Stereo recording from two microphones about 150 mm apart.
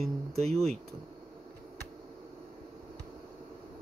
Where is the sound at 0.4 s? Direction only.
45° right (ahead or behind).